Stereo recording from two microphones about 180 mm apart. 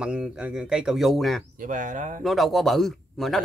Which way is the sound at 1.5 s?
45° right (ahead or behind).